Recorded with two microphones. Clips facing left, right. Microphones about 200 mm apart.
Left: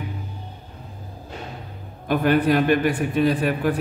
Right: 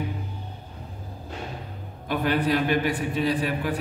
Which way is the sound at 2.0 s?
55° left (ahead or behind).